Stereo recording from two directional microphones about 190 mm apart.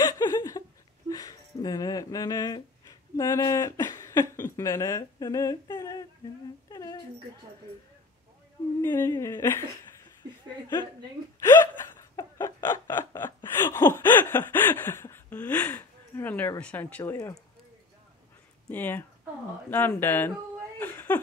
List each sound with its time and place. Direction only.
0.0 s a sound: 20° left (ahead or behind)
6.7 s dog: 20° left (ahead or behind)
8.8 s speech: 15° left (ahead or behind)
11.3 s hiccup: 15° left (ahead or behind)
18.7 s speech: 10° left (ahead or behind)